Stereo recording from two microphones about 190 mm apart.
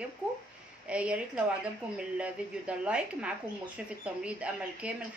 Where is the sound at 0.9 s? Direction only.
5° right (ahead or behind).